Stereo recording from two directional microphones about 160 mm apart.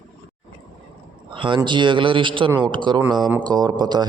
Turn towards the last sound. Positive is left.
turn(degrees=-25)  # may be behind; listen again after turning